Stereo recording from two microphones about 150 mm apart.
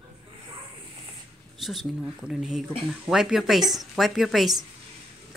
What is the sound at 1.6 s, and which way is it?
A woman's voice, centre (ahead or behind).